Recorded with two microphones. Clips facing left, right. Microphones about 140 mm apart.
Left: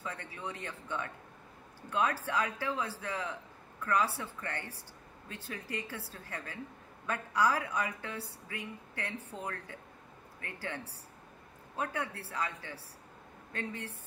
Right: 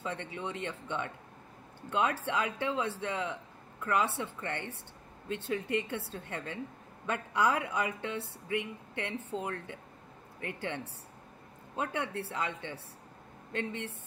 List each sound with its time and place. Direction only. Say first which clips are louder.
0.0 s a woman's voice: right 4 dB; 25° right (ahead or behind)